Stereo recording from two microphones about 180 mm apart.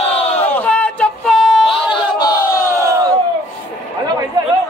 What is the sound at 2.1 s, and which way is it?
Crowd, 20° left (ahead or behind).